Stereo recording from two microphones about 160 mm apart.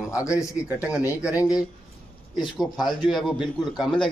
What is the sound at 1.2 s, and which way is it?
A man's voice, 5° right (ahead or behind).